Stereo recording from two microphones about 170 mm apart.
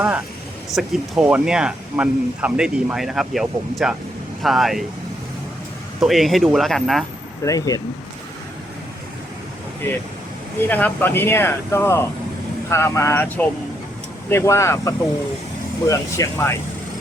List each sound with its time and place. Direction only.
0.7 s speech: 5° right (ahead or behind)
6.0 s speech: centre (ahead or behind)
7.4 s speech: 20° left (ahead or behind)
10.7 s speech: 10° left (ahead or behind)